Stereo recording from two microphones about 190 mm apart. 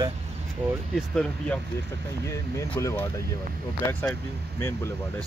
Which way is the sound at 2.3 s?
15° left (ahead or behind).